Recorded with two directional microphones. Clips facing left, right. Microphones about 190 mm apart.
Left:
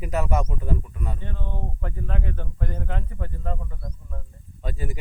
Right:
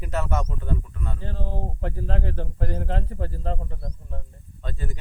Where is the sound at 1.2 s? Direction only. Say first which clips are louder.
Right 3 dB; 35° right (ahead or behind).